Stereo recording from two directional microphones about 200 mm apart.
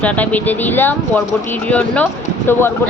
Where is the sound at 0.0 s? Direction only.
10° left (ahead or behind).